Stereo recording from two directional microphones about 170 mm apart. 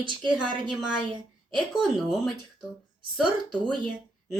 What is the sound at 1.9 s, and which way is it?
Speech, centre (ahead or behind).